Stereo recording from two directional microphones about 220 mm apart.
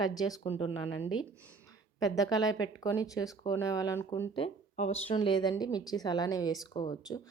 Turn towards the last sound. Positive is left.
turn(degrees=20)  # may be behind; listen again after turning